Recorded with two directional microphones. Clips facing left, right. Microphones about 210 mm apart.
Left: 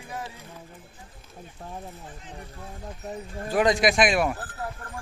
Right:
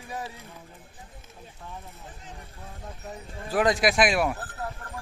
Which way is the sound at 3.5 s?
Centre (ahead or behind).